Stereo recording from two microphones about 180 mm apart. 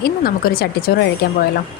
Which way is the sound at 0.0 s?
55° left (ahead or behind).